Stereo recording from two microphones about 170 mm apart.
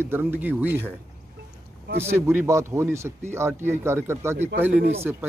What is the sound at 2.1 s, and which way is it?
Speech, 15° right (ahead or behind).